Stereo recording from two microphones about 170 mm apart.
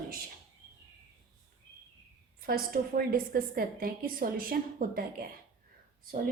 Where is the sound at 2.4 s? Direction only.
60° right (ahead or behind).